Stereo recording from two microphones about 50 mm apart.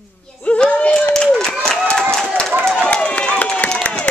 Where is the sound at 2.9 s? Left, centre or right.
Left.